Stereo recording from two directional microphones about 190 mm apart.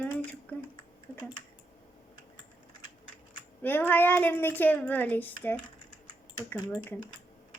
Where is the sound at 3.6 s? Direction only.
10° left (ahead or behind).